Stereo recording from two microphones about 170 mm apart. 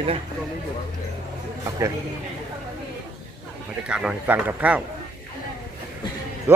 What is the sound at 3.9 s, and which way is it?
Speech, 5° right (ahead or behind).